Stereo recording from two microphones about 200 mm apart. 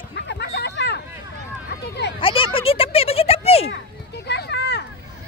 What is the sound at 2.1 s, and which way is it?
Speech, 25° left (ahead or behind).